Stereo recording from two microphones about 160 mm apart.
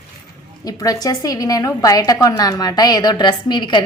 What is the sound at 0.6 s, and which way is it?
A woman's voice, 20° left (ahead or behind).